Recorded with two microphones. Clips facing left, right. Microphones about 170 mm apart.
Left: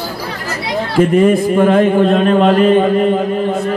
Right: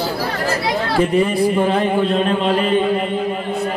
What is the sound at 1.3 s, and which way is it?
A man's voice, 50° left (ahead or behind).